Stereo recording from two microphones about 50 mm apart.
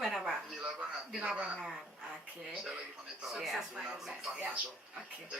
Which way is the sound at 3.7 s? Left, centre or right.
Centre.